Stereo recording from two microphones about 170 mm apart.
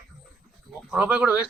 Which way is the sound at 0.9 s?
5° right (ahead or behind).